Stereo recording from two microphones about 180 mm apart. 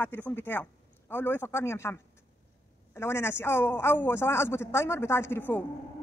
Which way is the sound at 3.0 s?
15° left (ahead or behind).